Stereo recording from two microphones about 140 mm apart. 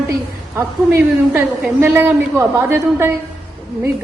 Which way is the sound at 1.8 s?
15° right (ahead or behind).